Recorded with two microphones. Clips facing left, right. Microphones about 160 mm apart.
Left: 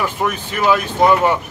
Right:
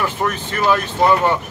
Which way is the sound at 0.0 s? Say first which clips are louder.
Left 1 dB; 10° left (ahead or behind).